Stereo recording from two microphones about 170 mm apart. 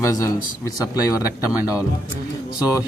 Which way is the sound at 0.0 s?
20° left (ahead or behind).